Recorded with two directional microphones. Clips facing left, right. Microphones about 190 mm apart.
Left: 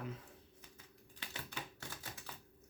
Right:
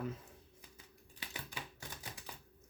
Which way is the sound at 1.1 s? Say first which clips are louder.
Even; 10° right (ahead or behind).